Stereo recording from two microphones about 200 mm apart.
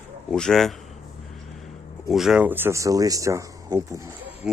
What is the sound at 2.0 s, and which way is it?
Speech, centre (ahead or behind).